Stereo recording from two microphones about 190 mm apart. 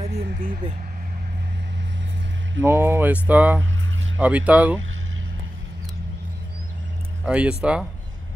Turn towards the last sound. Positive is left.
turn(degrees=-5)  # may be behind; listen again after turning